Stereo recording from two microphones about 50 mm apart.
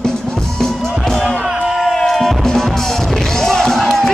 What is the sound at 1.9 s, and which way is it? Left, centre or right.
Music, centre.